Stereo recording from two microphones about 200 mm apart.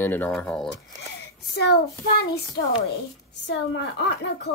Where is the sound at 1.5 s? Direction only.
55° left (ahead or behind).